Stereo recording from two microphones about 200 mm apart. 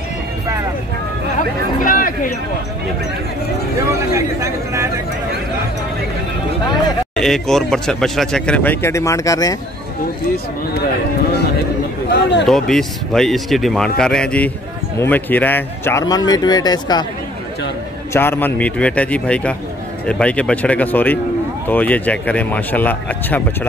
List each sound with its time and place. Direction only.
1.9 s a sound: 45° left (ahead or behind)
4.1 s a man's voice: 15° right (ahead or behind)
7.2 s speech: centre (ahead or behind)
12.1 s speech: 60° left (ahead or behind)
12.4 s speech: centre (ahead or behind); by 17.0 s 20° left (ahead or behind)
18.1 s speech: 10° left (ahead or behind)